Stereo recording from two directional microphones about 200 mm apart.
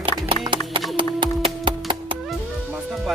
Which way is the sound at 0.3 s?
25° right (ahead or behind).